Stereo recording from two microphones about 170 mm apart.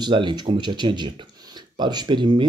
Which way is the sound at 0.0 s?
25° right (ahead or behind).